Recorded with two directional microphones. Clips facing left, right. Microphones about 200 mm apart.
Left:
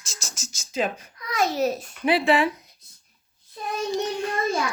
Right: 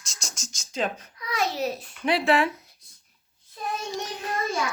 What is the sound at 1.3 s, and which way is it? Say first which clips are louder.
Speech: left 4 dB; 45° left (ahead or behind).